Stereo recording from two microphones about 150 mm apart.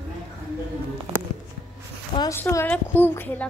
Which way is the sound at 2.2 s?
20° left (ahead or behind).